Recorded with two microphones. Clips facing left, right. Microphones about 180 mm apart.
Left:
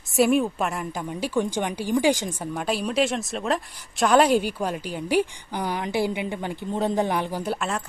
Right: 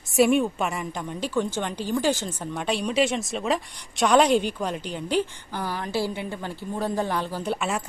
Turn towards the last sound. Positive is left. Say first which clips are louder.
# even
turn(degrees=-5)  # may be behind; listen again after turning